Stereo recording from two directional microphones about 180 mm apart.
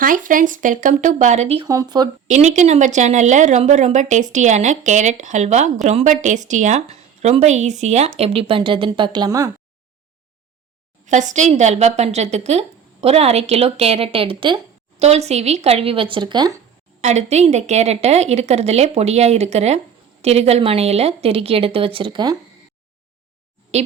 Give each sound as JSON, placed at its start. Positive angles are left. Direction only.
{"t": 0.0, "sound": "speech", "side_deg": -50}
{"t": 1.6, "sound": "speech", "side_deg": -20}
{"t": 2.2, "sound": "speech", "side_deg": -40}
{"t": 11.0, "sound": "speech", "side_deg": -40}
{"t": 17.0, "sound": "speech", "side_deg": -40}